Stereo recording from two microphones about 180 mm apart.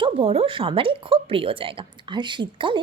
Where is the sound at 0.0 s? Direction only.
30° right (ahead or behind).